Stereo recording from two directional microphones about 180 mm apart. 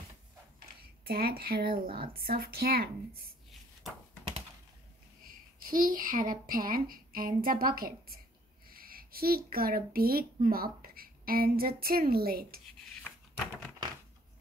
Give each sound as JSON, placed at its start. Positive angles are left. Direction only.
{"t": 1.0, "sound": "speech", "side_deg": -60}
{"t": 5.7, "sound": "a woman's voice", "side_deg": -50}